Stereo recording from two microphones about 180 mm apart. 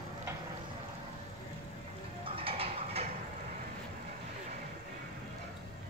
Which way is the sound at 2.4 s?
30° right (ahead or behind).